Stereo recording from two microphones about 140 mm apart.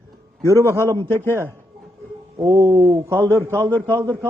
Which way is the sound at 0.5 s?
20° right (ahead or behind).